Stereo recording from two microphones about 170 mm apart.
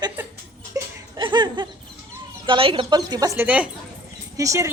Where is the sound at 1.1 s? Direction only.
25° right (ahead or behind).